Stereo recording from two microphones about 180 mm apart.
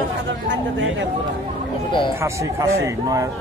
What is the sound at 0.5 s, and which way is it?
Speech, 90° right.